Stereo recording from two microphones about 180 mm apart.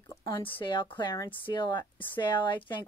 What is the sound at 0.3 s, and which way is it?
A woman's voice, 30° left (ahead or behind).